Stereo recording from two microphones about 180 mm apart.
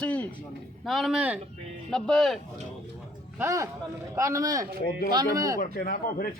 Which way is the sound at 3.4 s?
15° right (ahead or behind).